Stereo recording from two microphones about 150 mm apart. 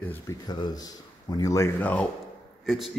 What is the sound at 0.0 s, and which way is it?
Speech, 10° left (ahead or behind).